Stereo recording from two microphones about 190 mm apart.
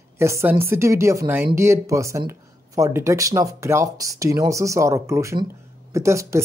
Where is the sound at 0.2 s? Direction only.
15° right (ahead or behind).